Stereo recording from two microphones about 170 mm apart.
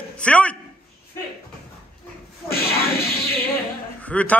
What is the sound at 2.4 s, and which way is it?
Music, 65° left (ahead or behind).